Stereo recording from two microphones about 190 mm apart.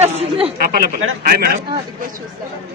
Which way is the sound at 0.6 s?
50° right (ahead or behind).